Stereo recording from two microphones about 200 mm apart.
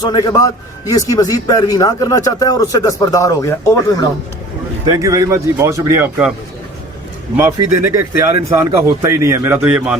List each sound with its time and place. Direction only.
0.1 s a man's voice: 20° left (ahead or behind)
4.9 s a man's voice: 15° right (ahead or behind)
7.3 s a man's voice: 15° right (ahead or behind)